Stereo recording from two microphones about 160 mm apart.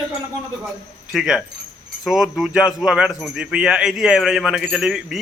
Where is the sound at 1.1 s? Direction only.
5° right (ahead or behind).